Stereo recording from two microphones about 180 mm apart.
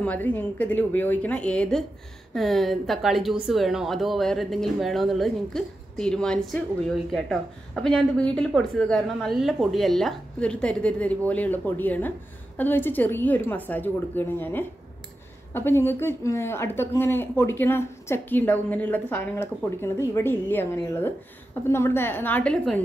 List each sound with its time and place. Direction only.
0.0 s a woman's voice: 10° left (ahead or behind)